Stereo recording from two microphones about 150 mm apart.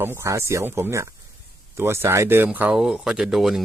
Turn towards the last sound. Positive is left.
turn(degrees=0)  # may be behind; listen again after turning